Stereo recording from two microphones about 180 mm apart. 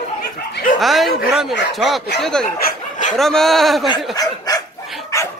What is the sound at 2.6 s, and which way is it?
Chicken, 45° left (ahead or behind).